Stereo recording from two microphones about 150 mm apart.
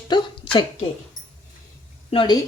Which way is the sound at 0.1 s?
35° left (ahead or behind).